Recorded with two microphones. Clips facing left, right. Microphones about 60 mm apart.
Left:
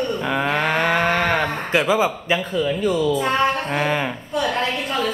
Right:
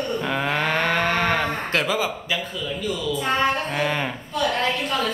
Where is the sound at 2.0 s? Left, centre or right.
Left.